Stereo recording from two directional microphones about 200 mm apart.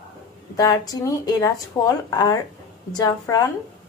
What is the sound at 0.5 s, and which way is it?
Speech, 20° left (ahead or behind).